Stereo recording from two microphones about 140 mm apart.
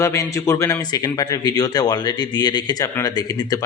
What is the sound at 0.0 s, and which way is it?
A man's voice, 20° left (ahead or behind).